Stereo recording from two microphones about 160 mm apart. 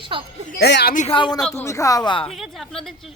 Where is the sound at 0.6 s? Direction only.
90° left.